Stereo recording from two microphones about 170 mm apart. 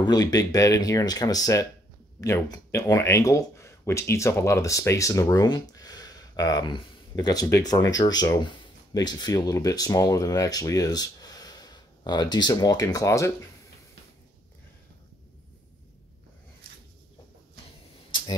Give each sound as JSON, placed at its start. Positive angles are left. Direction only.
{"t": 0.0, "sound": "speech", "side_deg": 25}